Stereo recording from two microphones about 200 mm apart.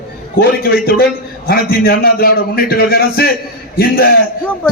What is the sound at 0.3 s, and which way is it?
A man's voice, 50° left (ahead or behind).